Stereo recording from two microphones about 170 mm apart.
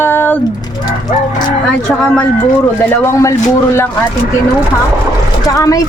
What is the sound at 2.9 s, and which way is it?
Speech, 15° left (ahead or behind).